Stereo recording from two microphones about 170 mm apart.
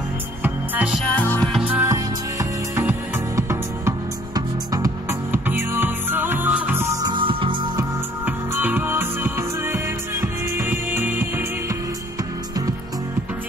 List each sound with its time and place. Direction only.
0.4 s music: 5° right (ahead or behind)
1.0 s music: 10° left (ahead or behind)
1.6 s music: 10° right (ahead or behind)
7.1 s music: 30° right (ahead or behind)
8.3 s music: 10° right (ahead or behind)